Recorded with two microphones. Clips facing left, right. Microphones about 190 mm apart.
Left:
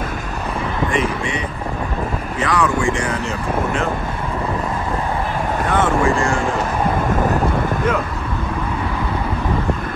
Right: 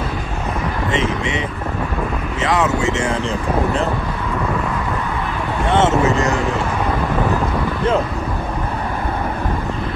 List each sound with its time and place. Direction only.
2.4 s speech: 20° right (ahead or behind)
5.7 s speech: 25° right (ahead or behind)